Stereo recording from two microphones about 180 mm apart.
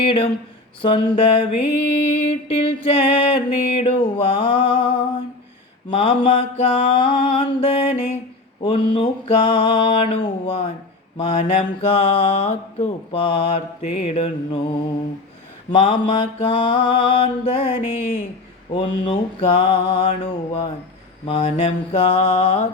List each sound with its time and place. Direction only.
0.0 s mantra: 30° left (ahead or behind)
15.7 s mantra: 30° left (ahead or behind)